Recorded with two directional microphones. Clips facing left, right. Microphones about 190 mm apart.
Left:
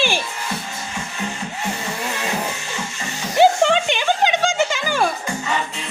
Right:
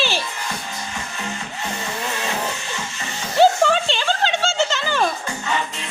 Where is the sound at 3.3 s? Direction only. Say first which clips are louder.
Left 1 dB; 15° left (ahead or behind).